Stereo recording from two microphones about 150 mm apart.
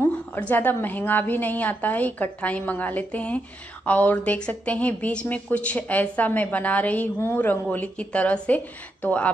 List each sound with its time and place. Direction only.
0.0 s a woman's voice: 10° left (ahead or behind)